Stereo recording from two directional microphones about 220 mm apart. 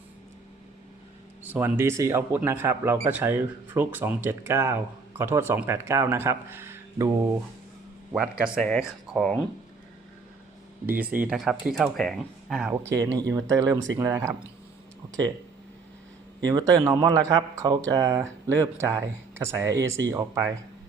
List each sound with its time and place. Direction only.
1.5 s speech: 10° right (ahead or behind)
8.1 s speech: 5° right (ahead or behind)
11.3 s speech: 5° right (ahead or behind)
13.0 s speech: 15° right (ahead or behind)
16.5 s speech: 15° right (ahead or behind)